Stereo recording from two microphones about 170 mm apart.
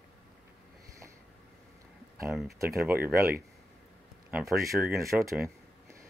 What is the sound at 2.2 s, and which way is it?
Speech, centre (ahead or behind).